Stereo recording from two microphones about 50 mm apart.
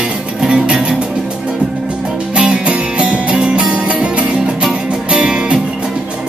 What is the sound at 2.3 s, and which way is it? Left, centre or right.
Music, centre.